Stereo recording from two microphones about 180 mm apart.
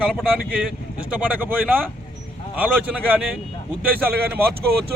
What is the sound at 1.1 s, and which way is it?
Speech, 10° right (ahead or behind).